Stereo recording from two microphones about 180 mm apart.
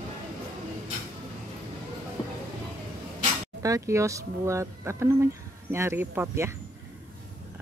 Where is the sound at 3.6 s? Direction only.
15° right (ahead or behind).